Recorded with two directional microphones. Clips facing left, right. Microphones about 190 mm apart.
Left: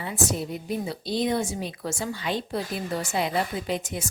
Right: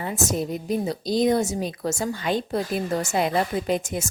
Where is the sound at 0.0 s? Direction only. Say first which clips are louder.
Right 3 dB; 45° right (ahead or behind).